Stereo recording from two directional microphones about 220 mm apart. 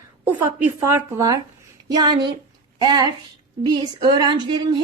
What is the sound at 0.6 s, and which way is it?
A woman's voice, 10° right (ahead or behind).